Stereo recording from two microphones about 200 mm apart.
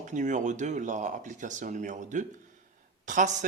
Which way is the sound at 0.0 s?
40° right (ahead or behind).